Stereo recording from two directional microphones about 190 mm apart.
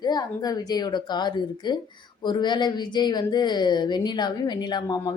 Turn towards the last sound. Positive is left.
turn(degrees=20)  # may be behind; listen again after turning